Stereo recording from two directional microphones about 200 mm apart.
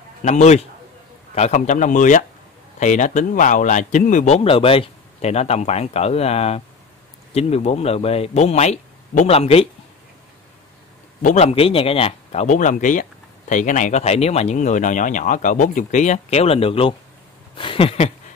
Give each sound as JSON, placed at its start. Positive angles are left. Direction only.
{"t": 0.2, "sound": "speech", "side_deg": 35}
{"t": 11.2, "sound": "speech", "side_deg": 30}
{"t": 17.6, "sound": "a sound", "side_deg": 25}